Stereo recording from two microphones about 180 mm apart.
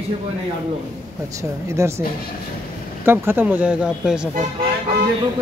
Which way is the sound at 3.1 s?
10° right (ahead or behind).